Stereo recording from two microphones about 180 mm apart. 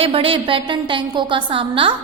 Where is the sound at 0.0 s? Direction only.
30° right (ahead or behind).